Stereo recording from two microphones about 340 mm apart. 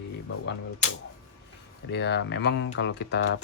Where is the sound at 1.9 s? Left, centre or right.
Left.